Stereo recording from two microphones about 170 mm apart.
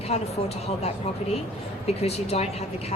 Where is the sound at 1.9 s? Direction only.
40° left (ahead or behind).